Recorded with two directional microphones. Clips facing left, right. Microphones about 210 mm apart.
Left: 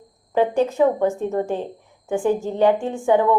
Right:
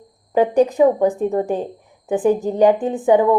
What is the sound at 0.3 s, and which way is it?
A woman's voice, 15° right (ahead or behind).